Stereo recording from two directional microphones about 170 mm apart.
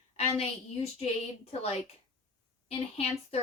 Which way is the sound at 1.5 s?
40° left (ahead or behind).